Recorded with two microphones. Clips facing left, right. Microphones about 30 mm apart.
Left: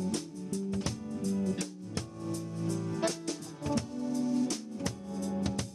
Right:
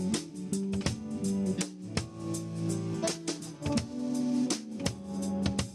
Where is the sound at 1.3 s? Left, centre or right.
Left.